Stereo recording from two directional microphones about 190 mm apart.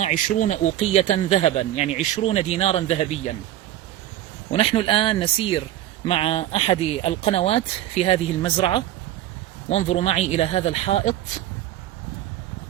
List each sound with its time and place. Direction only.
0.0 s speech: 40° left (ahead or behind)
4.5 s speech: 30° left (ahead or behind)